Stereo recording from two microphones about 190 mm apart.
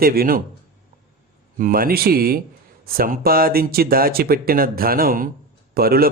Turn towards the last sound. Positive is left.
turn(degrees=-50)  # may be behind; listen again after turning